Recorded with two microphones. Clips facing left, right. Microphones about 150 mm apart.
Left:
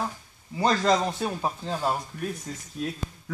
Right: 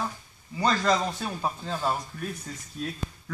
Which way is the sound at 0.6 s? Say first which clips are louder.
Left 2 dB; 20° left (ahead or behind).